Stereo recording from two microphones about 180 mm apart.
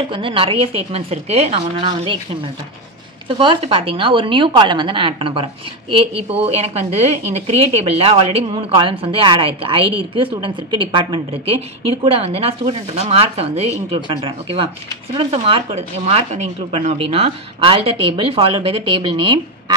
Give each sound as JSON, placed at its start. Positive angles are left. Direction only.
{"t": 0.1, "sound": "a woman's voice", "side_deg": -30}
{"t": 3.3, "sound": "a woman's voice", "side_deg": -30}